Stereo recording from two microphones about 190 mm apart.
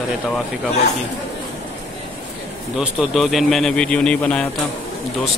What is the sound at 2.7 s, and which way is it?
A man's voice, centre (ahead or behind).